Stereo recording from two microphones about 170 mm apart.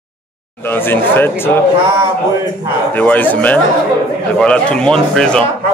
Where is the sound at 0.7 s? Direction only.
10° left (ahead or behind).